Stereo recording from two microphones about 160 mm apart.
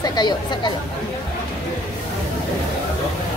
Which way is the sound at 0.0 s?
25° left (ahead or behind).